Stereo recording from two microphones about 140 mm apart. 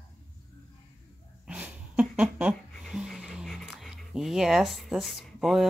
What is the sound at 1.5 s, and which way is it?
Speech, 10° right (ahead or behind).